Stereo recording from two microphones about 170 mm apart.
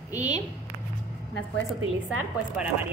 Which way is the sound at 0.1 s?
20° left (ahead or behind).